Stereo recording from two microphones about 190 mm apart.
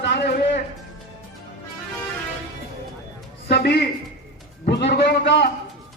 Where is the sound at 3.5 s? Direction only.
60° left (ahead or behind).